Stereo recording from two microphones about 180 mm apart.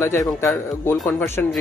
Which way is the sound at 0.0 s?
15° left (ahead or behind).